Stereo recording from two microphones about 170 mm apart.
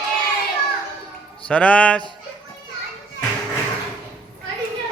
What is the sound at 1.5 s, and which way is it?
Speech, 5° left (ahead or behind).